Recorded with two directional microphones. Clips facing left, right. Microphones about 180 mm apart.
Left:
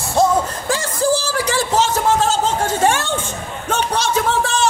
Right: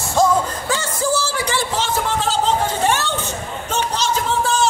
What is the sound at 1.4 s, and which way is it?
Chatter, 40° left (ahead or behind).